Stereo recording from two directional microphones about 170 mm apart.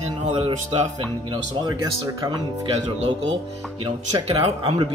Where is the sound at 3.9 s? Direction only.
30° right (ahead or behind).